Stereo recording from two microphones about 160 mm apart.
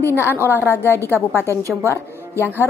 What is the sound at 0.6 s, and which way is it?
Speech, 15° left (ahead or behind).